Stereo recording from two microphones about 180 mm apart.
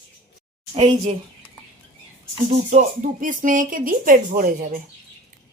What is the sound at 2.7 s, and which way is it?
Speech, 45° right (ahead or behind).